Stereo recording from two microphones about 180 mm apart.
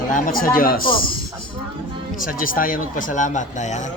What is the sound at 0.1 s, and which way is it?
Speech, 50° left (ahead or behind).